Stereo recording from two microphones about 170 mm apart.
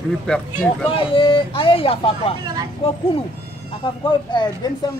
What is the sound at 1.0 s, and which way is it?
Speech, 30° left (ahead or behind).